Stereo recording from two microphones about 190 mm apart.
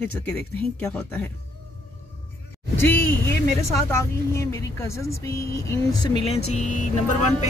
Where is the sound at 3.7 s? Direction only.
15° left (ahead or behind).